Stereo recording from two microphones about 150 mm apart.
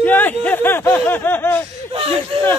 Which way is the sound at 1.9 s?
40° right (ahead or behind).